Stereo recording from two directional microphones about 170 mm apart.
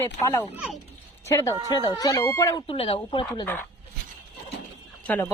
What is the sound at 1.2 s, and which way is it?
Speech, 20° left (ahead or behind).